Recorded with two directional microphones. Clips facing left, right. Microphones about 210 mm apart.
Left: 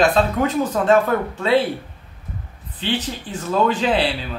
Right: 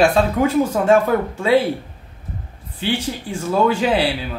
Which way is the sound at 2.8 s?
10° right (ahead or behind).